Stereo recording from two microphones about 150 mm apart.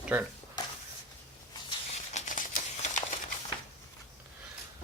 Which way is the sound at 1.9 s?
55° left (ahead or behind).